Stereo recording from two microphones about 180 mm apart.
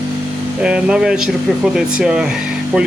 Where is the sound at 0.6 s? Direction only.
5° right (ahead or behind).